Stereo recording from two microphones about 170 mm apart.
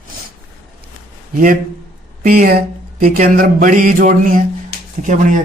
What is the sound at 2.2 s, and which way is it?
A man's voice, 60° right (ahead or behind).